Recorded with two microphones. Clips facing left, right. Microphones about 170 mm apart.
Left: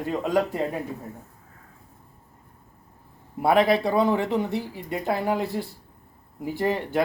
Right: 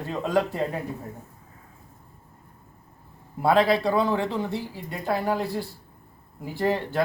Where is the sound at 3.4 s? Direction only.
20° left (ahead or behind).